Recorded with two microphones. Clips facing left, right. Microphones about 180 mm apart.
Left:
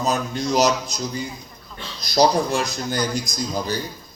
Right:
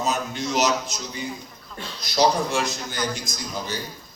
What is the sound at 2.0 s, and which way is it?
Speech, 40° left (ahead or behind).